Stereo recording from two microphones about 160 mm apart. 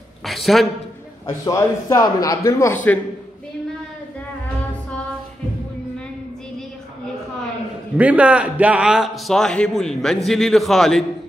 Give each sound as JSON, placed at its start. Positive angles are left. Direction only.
{"t": 0.2, "sound": "a man's voice", "side_deg": 0}
{"t": 1.4, "sound": "a man's voice", "side_deg": 20}
{"t": 8.0, "sound": "a man's voice", "side_deg": -10}